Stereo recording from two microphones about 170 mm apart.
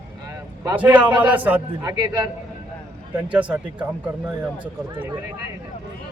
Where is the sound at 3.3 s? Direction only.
5° right (ahead or behind).